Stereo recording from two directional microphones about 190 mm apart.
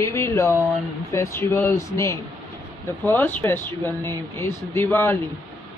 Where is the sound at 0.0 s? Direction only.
15° left (ahead or behind).